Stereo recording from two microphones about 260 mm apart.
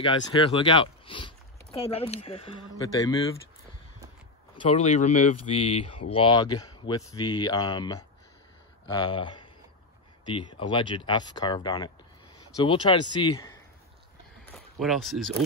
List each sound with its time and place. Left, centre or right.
0.0 s speech: centre
4.6 s speech: left
10.6 s speech: centre
14.5 s speech: centre